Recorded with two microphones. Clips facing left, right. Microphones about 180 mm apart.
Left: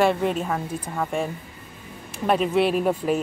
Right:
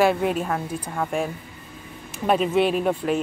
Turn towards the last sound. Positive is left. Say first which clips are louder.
# even
turn(degrees=5)  # may be behind; listen again after turning